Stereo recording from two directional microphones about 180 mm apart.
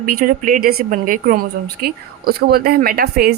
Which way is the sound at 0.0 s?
50° right (ahead or behind).